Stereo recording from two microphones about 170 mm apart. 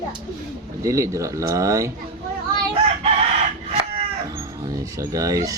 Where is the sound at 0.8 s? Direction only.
20° right (ahead or behind).